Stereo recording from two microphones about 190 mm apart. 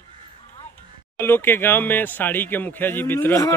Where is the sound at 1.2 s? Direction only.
10° left (ahead or behind).